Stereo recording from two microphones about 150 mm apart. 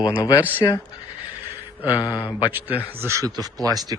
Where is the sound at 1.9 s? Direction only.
25° left (ahead or behind).